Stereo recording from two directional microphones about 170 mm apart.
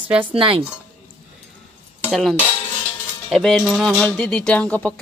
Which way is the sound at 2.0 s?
Centre (ahead or behind).